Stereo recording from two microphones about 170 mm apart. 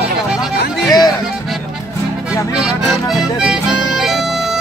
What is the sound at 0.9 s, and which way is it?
Speech, 25° left (ahead or behind).